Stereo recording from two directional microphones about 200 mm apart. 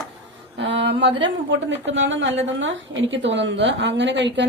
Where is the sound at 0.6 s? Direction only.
65° right (ahead or behind).